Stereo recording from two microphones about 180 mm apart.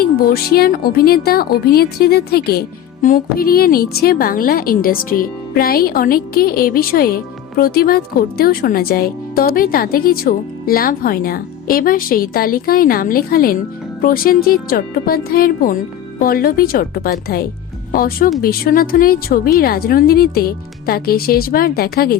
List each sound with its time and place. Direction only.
0.0 s speech: 55° left (ahead or behind)